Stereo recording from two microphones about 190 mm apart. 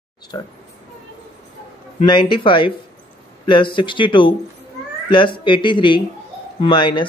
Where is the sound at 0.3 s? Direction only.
25° left (ahead or behind).